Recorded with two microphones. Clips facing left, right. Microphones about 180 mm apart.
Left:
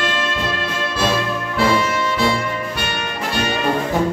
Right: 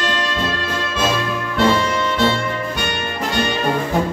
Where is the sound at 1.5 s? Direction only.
5° left (ahead or behind).